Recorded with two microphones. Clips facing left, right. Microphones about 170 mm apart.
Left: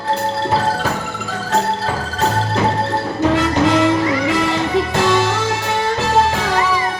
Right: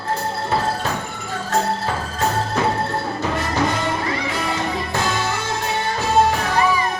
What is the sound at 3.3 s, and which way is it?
Music, 85° left.